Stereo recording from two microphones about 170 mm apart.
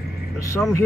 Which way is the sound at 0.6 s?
15° left (ahead or behind).